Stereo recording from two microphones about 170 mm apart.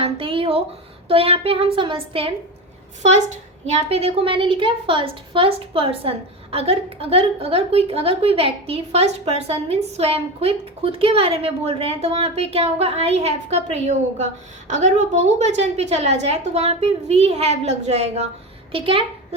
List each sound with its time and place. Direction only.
0.0 s a sound: 30° right (ahead or behind)
1.0 s a woman's voice: 35° right (ahead or behind)
3.0 s a woman's voice: 40° right (ahead or behind)